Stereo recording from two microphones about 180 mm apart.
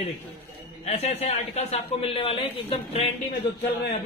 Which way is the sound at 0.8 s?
35° left (ahead or behind).